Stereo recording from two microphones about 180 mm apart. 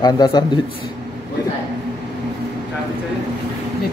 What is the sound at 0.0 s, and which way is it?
Speech, 20° left (ahead or behind).